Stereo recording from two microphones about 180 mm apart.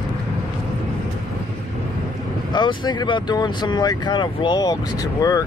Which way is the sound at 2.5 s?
25° left (ahead or behind).